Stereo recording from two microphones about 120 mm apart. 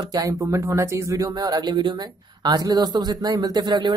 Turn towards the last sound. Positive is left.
turn(degrees=-40)  # may be behind; listen again after turning